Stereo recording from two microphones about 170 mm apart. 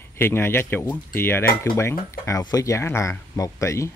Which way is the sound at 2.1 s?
20° left (ahead or behind).